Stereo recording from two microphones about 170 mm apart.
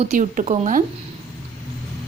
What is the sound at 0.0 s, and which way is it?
Speech, 45° right (ahead or behind).